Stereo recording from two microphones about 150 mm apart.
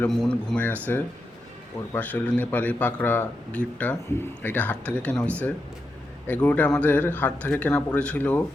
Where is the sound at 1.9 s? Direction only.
10° left (ahead or behind).